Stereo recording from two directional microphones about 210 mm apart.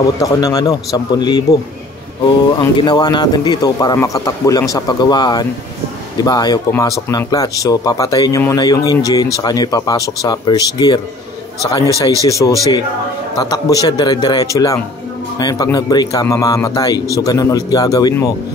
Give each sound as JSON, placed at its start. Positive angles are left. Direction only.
{"t": 0.2, "sound": "speech", "side_deg": 15}
{"t": 2.6, "sound": "speech", "side_deg": 20}